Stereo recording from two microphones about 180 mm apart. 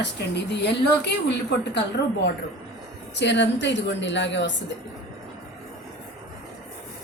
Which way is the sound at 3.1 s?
75° left (ahead or behind).